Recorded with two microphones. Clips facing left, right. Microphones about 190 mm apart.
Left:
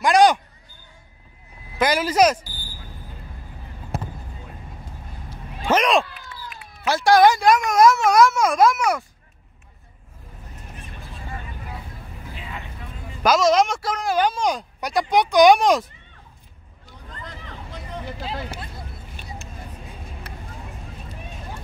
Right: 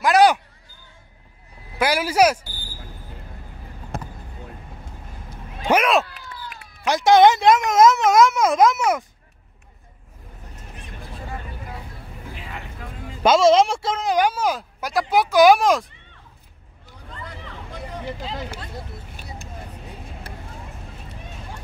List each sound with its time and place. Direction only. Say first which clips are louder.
0.0 s speech: even; 5° right (ahead or behind)
1.8 s speech: even; 10° right (ahead or behind)
5.6 s speech: even; 10° right (ahead or behind)
6.9 s speech: right 1 dB; 20° right (ahead or behind)
13.2 s speech: right 3 dB; 25° right (ahead or behind); by 15.9 s centre (ahead or behind)
18.2 s speech: even; 10° left (ahead or behind)